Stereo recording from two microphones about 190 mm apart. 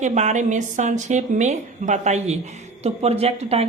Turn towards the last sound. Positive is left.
turn(degrees=-30)  # may be behind; listen again after turning